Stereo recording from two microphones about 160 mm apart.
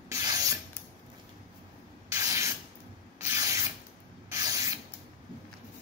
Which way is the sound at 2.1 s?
20° right (ahead or behind).